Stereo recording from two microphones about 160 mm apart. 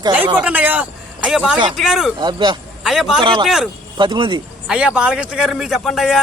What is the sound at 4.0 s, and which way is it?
Speech, 30° right (ahead or behind).